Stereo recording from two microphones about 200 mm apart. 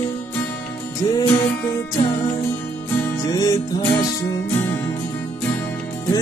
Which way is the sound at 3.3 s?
20° left (ahead or behind).